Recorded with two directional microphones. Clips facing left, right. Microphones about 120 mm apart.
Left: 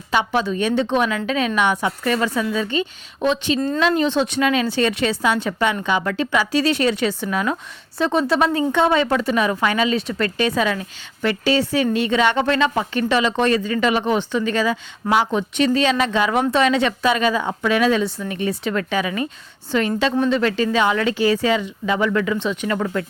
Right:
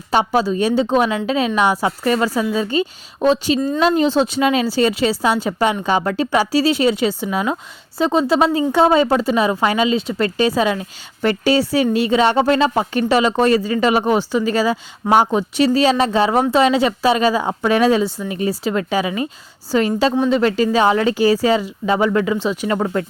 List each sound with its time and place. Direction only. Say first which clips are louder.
0.1 s a woman's voice: right 3 dB; 40° right (ahead or behind)
11.2 s a woman's voice: right 3 dB; 40° right (ahead or behind)
20.3 s a woman's voice: right 3 dB; 35° right (ahead or behind)